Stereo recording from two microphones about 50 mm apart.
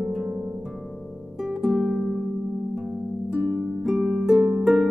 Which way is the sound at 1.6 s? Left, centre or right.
Centre.